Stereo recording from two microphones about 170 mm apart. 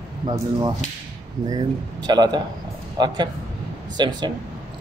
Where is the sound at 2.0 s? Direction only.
25° right (ahead or behind).